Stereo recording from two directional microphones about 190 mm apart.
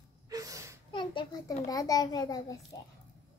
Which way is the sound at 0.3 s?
20° right (ahead or behind).